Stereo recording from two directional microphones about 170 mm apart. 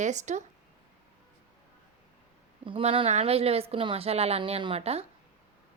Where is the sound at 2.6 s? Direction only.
30° right (ahead or behind).